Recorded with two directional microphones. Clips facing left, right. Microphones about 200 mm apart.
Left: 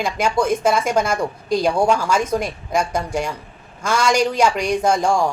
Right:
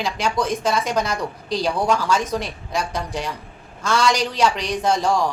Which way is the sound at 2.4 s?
50° left (ahead or behind).